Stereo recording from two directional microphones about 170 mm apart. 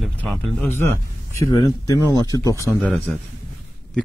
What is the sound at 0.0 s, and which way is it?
Speech, 5° left (ahead or behind).